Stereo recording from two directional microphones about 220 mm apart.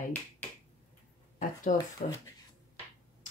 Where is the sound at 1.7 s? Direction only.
35° left (ahead or behind).